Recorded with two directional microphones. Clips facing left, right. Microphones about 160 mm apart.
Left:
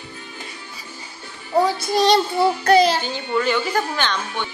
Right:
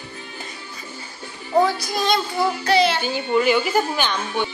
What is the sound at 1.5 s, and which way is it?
Speech, 10° left (ahead or behind).